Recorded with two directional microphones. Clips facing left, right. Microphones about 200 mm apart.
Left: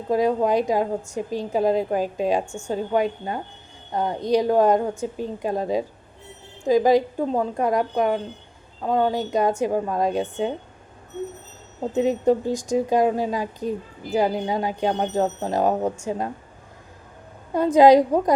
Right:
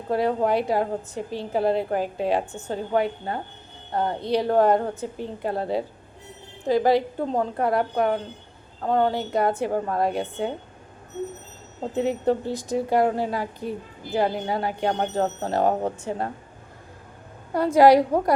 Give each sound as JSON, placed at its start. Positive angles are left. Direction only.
{"t": 0.1, "sound": "a woman's voice", "side_deg": 15}
{"t": 11.9, "sound": "a woman's voice", "side_deg": 15}
{"t": 17.5, "sound": "a woman's voice", "side_deg": 20}